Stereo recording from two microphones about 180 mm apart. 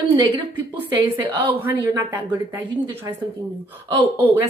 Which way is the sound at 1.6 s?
10° right (ahead or behind).